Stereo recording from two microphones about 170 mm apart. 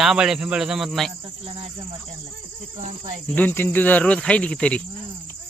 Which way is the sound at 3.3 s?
10° left (ahead or behind).